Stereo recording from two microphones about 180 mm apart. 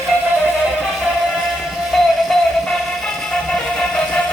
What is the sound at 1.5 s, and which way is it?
Music, centre (ahead or behind).